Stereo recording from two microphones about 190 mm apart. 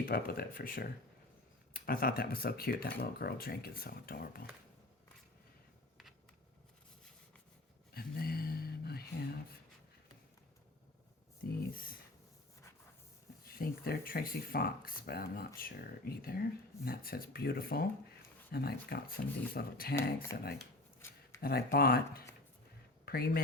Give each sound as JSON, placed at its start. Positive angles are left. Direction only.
{"t": 0.0, "sound": "speech", "side_deg": 50}
{"t": 7.9, "sound": "a sound", "side_deg": 55}
{"t": 11.4, "sound": "speech", "side_deg": 50}
{"t": 13.6, "sound": "speech", "side_deg": 50}
{"t": 21.4, "sound": "speech", "side_deg": 50}